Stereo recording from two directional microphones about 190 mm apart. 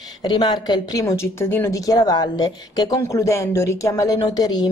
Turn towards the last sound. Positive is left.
turn(degrees=20)  # may be behind; listen again after turning